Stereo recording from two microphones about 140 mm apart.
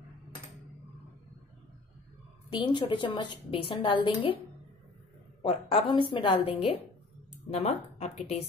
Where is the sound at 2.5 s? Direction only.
35° left (ahead or behind).